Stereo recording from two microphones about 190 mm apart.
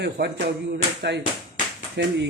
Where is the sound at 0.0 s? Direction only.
60° right (ahead or behind).